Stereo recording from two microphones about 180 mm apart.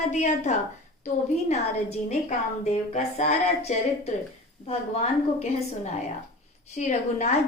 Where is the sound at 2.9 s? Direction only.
40° left (ahead or behind).